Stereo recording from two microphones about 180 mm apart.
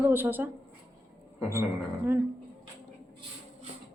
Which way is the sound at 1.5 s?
10° right (ahead or behind).